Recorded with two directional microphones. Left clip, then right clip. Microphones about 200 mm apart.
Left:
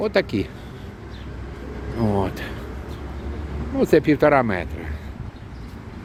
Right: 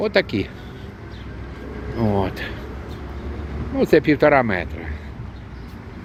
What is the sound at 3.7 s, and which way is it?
Speech, centre (ahead or behind).